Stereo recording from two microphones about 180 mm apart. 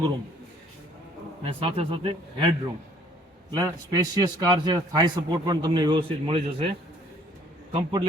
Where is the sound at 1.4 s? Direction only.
30° right (ahead or behind).